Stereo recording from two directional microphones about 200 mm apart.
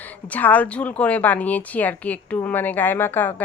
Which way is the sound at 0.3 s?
10° left (ahead or behind).